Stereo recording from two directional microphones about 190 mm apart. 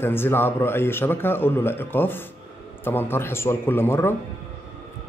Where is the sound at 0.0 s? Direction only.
10° left (ahead or behind).